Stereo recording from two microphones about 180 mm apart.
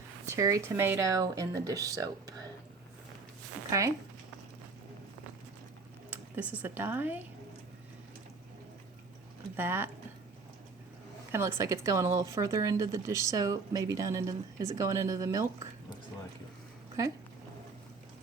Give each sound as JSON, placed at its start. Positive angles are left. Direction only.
{"t": 0.3, "sound": "speech", "side_deg": -20}
{"t": 3.7, "sound": "speech", "side_deg": -20}
{"t": 6.1, "sound": "speech", "side_deg": -10}
{"t": 9.6, "sound": "speech", "side_deg": -10}
{"t": 11.3, "sound": "speech", "side_deg": -15}